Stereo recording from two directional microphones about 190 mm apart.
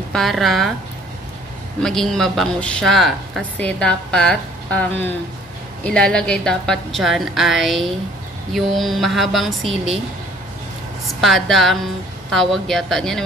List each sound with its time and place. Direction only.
0.1 s speech: centre (ahead or behind)
1.8 s speech: centre (ahead or behind)
5.9 s speech: 5° left (ahead or behind)
11.1 s speech: centre (ahead or behind)